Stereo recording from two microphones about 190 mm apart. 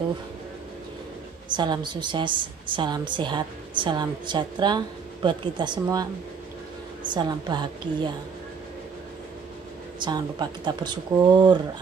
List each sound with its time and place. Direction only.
1.5 s a woman's voice: 25° right (ahead or behind)
7.1 s a woman's voice: 20° right (ahead or behind)
9.9 s a woman's voice: 20° right (ahead or behind)